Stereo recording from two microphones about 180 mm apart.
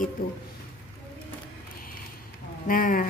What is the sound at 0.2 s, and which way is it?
Speech, 55° left (ahead or behind).